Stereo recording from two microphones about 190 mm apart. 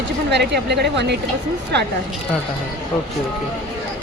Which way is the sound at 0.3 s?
65° right (ahead or behind).